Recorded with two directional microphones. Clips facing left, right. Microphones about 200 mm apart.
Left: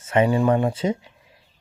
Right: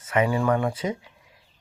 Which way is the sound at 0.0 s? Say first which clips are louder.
Left 4 dB; 25° left (ahead or behind).